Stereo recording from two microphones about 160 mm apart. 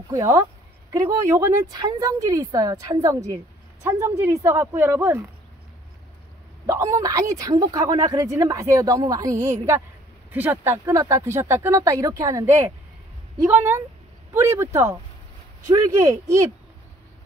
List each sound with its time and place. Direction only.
0.1 s speech: 20° right (ahead or behind)
6.6 s speech: 20° right (ahead or behind)
9.4 s a woman's voice: 50° right (ahead or behind)
10.3 s speech: 15° right (ahead or behind)